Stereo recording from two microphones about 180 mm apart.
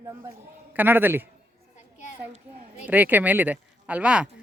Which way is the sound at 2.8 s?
10° right (ahead or behind).